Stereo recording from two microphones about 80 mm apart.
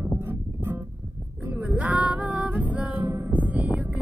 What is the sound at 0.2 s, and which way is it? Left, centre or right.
Music, right.